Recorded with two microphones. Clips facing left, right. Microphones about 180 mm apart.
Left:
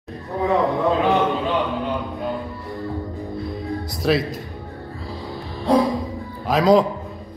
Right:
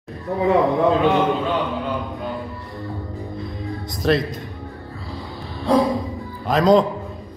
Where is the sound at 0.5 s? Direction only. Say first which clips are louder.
Right 3 dB; centre (ahead or behind).